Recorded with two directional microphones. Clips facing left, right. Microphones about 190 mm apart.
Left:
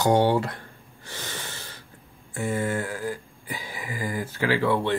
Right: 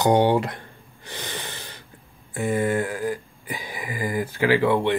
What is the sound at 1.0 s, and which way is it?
Snort, 15° right (ahead or behind).